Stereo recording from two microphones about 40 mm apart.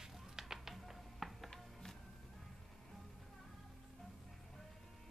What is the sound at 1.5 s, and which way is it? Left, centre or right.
Music, centre.